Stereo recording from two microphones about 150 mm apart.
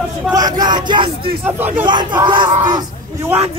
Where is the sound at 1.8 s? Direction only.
30° right (ahead or behind).